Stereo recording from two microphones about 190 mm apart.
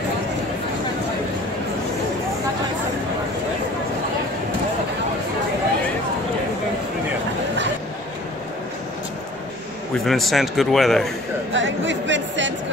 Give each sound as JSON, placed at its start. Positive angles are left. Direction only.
{"t": 10.0, "sound": "a man's voice", "side_deg": 0}
{"t": 11.5, "sound": "speech", "side_deg": -75}